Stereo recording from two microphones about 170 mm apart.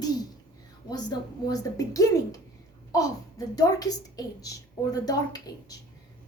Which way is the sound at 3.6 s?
20° left (ahead or behind).